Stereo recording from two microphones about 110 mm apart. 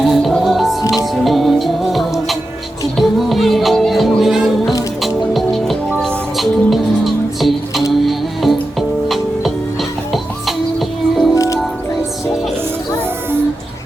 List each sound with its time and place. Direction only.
0.0 s music: centre (ahead or behind)
11.3 s music: 30° left (ahead or behind)